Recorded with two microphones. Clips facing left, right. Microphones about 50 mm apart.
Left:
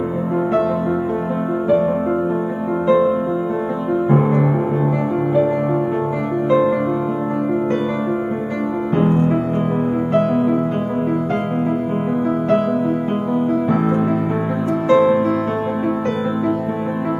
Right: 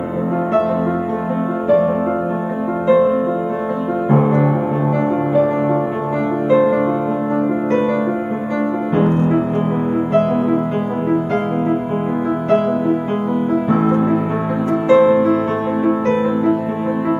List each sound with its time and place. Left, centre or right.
2.9 s music: centre
4.1 s music: centre
6.5 s music: centre
13.7 s music: centre